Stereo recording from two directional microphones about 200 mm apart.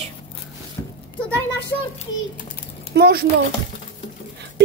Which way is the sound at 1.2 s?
10° left (ahead or behind).